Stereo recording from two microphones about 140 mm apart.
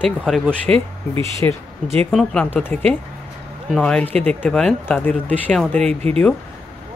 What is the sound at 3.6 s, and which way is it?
Speech, 5° left (ahead or behind).